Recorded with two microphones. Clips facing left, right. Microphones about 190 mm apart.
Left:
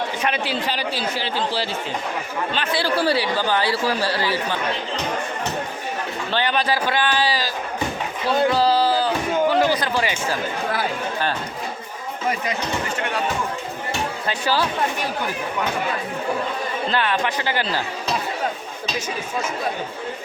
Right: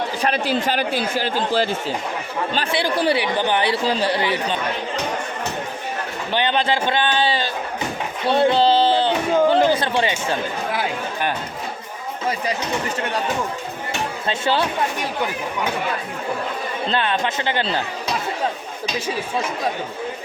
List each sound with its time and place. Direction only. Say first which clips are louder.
0.2 s a man's voice: right 6 dB; 40° right (ahead or behind)
2.7 s speech: right 1 dB; 15° right (ahead or behind)
6.3 s speech: right 2 dB; 25° right (ahead or behind)
8.3 s a sound: right 2 dB; 25° right (ahead or behind)
14.3 s speech: right 2 dB; 25° right (ahead or behind)
16.9 s speech: right 1 dB; 25° right (ahead or behind)